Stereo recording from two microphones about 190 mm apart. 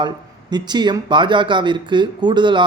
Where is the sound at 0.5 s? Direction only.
25° right (ahead or behind).